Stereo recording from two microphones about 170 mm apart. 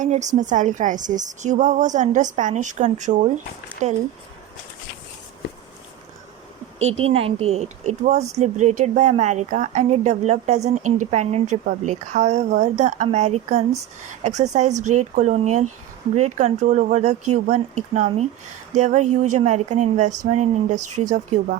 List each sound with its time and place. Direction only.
0.0 s speech: 45° right (ahead or behind)
6.8 s speech: 35° right (ahead or behind)